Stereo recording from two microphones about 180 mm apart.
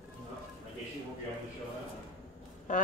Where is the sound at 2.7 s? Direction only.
45° left (ahead or behind).